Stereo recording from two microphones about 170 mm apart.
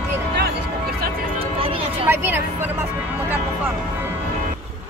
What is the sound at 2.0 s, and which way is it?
Music, 10° right (ahead or behind).